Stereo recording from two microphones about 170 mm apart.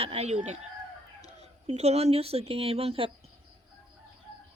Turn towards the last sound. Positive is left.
turn(degrees=-35)  # may be behind; listen again after turning